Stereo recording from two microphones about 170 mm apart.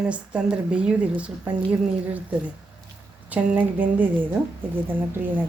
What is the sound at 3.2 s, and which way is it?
A woman's voice, 10° right (ahead or behind).